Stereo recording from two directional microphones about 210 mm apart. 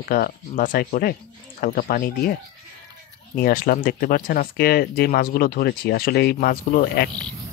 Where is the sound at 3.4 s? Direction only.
45° left (ahead or behind).